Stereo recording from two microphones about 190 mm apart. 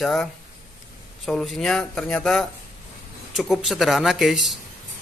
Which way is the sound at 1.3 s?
Centre (ahead or behind).